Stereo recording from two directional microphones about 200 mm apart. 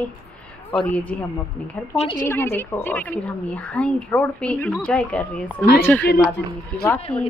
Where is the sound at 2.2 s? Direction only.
10° left (ahead or behind).